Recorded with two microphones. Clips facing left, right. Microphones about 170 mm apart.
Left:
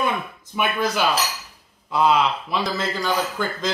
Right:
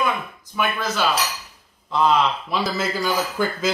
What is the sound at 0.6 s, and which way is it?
Speech, 15° left (ahead or behind).